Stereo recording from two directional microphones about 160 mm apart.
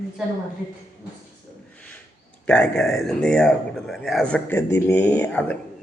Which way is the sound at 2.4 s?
5° left (ahead or behind).